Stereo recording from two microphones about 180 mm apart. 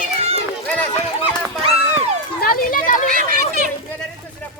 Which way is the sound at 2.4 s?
55° left (ahead or behind).